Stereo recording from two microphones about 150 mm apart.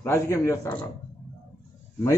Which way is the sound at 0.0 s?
15° left (ahead or behind).